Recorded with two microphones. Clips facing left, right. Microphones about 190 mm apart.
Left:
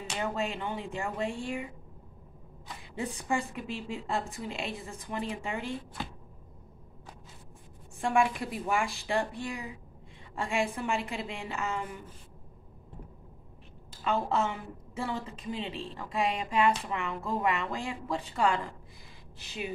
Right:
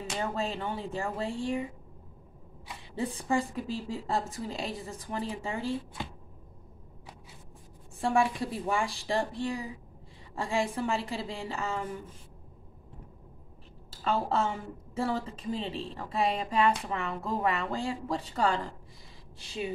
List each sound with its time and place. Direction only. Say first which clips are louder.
0.0 s a woman's voice: even; 35° right (ahead or behind)
3.0 s a woman's voice: right 3 dB; 35° right (ahead or behind)
8.0 s a woman's voice: even; 35° right (ahead or behind)
14.0 s a woman's voice: even; 35° right (ahead or behind)